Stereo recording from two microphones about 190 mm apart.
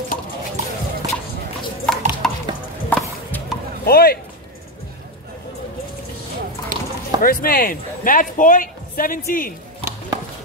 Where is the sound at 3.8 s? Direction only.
55° left (ahead or behind).